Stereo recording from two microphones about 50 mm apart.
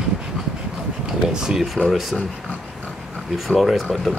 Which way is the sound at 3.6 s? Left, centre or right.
Centre.